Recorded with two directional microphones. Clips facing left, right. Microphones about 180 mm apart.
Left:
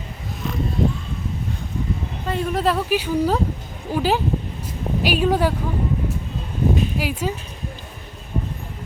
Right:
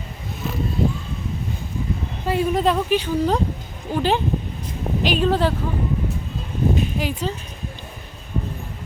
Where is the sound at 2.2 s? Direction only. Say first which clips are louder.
Right 2 dB; 5° right (ahead or behind).